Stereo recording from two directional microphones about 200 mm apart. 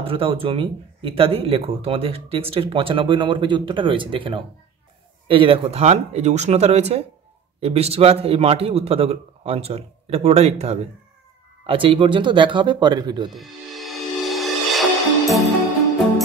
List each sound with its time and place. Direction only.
0.0 s speech: 30° right (ahead or behind)
13.3 s music: centre (ahead or behind)